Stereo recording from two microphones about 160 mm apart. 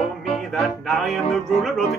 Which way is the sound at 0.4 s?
Centre (ahead or behind).